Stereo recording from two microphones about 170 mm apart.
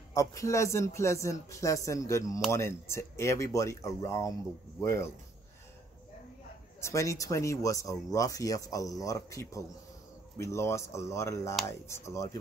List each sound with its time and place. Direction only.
0.1 s speech: 20° left (ahead or behind)
6.8 s speech: 20° left (ahead or behind)